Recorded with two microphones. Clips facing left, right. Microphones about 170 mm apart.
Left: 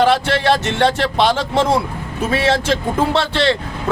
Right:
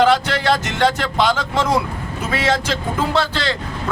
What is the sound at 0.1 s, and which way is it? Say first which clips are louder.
Speech: left 2 dB; 30° left (ahead or behind).